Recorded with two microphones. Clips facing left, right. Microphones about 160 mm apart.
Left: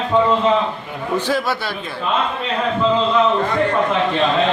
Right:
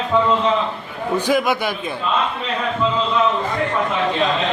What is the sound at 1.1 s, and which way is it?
Speech, 15° right (ahead or behind).